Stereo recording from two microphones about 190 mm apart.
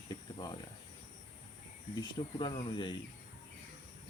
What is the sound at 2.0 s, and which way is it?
Cricket, 25° left (ahead or behind).